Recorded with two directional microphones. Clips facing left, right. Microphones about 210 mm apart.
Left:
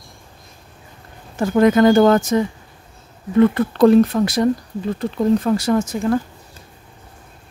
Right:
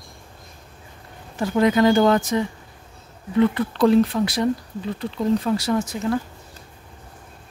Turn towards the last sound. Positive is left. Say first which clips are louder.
# left 4 dB
turn(degrees=45)  # may be behind; listen again after turning